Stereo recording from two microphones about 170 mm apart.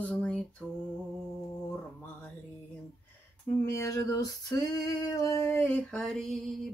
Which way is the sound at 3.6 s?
15° left (ahead or behind).